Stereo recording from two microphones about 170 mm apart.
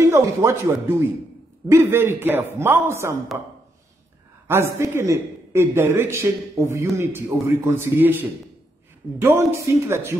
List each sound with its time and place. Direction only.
0.0 s speech: 15° right (ahead or behind)
1.7 s a man's voice: 15° right (ahead or behind)
4.5 s a man's voice: 15° right (ahead or behind)